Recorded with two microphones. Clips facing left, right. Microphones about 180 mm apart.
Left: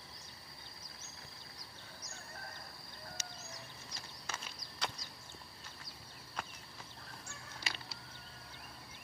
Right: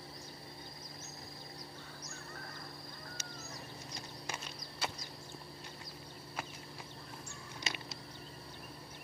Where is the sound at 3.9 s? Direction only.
15° right (ahead or behind).